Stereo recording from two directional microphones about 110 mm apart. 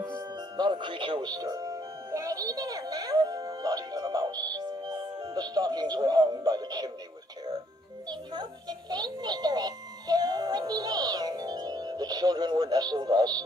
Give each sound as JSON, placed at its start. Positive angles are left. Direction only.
{"t": 0.6, "sound": "music", "side_deg": -45}
{"t": 8.1, "sound": "a child's voice", "side_deg": -40}